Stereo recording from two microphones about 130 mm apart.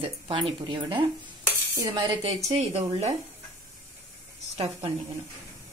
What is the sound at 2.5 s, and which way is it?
Speech, 55° right (ahead or behind).